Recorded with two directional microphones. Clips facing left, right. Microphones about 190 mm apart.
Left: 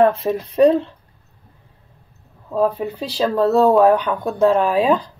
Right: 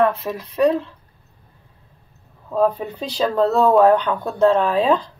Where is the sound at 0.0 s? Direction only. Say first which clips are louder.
Left 4 dB; 25° left (ahead or behind).